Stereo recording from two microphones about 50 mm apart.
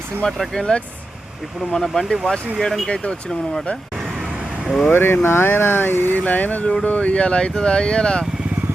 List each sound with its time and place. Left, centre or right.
0.3 s speech: centre
1.7 s speech: centre
4.9 s speech: left
6.1 s speech: left; by 8.2 s centre